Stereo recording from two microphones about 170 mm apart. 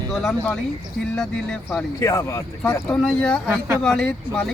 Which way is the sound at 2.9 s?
5° left (ahead or behind).